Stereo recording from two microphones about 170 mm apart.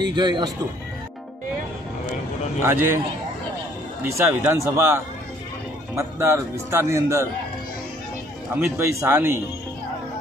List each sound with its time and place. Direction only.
0.0 s speech: 25° right (ahead or behind)
2.6 s a man's voice: 15° right (ahead or behind)
4.0 s a man's voice: 15° right (ahead or behind)
8.5 s a man's voice: 15° right (ahead or behind)